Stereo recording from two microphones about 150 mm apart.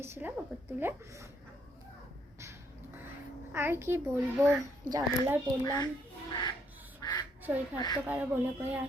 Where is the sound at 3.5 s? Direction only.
15° right (ahead or behind).